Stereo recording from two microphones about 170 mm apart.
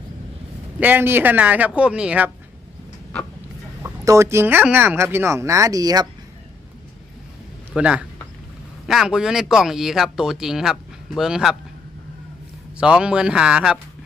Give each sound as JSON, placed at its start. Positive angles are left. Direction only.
{"t": 0.8, "sound": "speech", "side_deg": -10}
{"t": 3.8, "sound": "speech", "side_deg": -15}
{"t": 7.7, "sound": "speech", "side_deg": -5}
{"t": 12.7, "sound": "speech", "side_deg": -5}